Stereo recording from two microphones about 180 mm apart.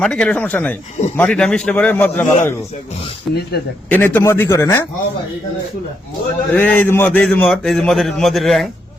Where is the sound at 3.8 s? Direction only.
10° left (ahead or behind).